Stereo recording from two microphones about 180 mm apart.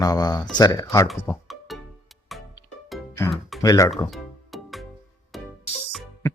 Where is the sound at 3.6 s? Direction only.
20° left (ahead or behind).